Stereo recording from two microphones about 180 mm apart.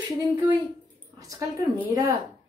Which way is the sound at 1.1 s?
20° right (ahead or behind).